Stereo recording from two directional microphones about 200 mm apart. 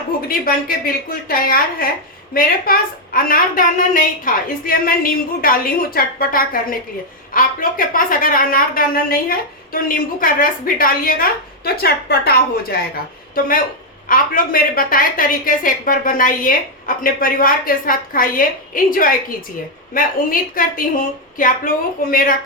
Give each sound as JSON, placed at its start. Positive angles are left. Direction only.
{"t": 0.3, "sound": "a woman's voice", "side_deg": 45}
{"t": 14.1, "sound": "a woman's voice", "side_deg": 45}